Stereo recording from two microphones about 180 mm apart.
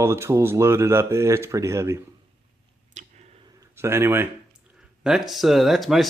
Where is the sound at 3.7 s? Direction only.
15° right (ahead or behind).